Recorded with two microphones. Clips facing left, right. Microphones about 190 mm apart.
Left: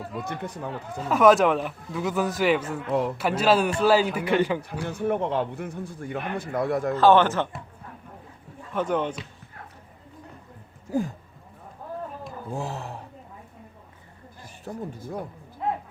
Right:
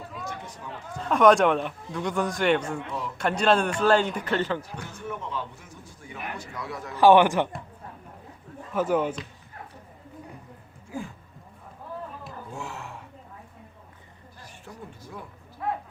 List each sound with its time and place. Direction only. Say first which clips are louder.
0.1 s speech: left 5 dB; 60° left (ahead or behind)
0.9 s speech: left 1 dB; 5° left (ahead or behind)
2.9 s speech: left 9 dB; 60° left (ahead or behind)
3.2 s a man's voice: right 2 dB; 5° left (ahead or behind)
4.9 s speech: left 12 dB; 60° left (ahead or behind)
6.9 s a man's voice: right 2 dB; 15° right (ahead or behind)
8.7 s speech: right 1 dB; 5° right (ahead or behind)
10.8 s speech: left 9 dB; 40° left (ahead or behind)
12.5 s speech: left 6 dB; 35° left (ahead or behind)
14.6 s speech: left 9 dB; 45° left (ahead or behind)
15.6 s a sound: left 2 dB; 20° left (ahead or behind)